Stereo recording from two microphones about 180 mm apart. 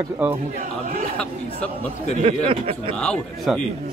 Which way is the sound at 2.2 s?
30° right (ahead or behind).